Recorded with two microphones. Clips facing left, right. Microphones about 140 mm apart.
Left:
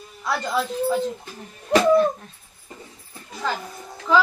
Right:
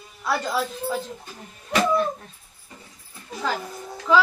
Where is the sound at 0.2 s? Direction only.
5° right (ahead or behind).